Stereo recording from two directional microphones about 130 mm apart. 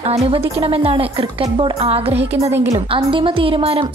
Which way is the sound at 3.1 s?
40° right (ahead or behind).